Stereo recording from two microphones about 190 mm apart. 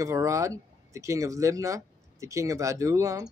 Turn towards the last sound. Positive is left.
turn(degrees=-15)  # may be behind; listen again after turning